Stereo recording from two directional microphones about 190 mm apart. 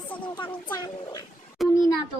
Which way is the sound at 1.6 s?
Centre (ahead or behind).